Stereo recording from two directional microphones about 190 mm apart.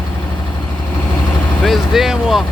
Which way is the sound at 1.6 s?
Centre (ahead or behind).